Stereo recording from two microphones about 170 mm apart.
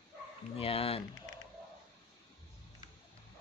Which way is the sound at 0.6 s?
35° left (ahead or behind).